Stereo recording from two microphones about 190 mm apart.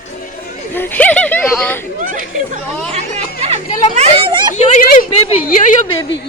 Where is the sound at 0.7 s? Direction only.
10° left (ahead or behind).